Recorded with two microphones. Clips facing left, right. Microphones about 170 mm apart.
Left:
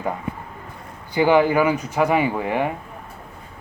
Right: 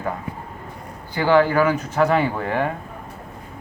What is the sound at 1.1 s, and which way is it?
Speech, 15° left (ahead or behind).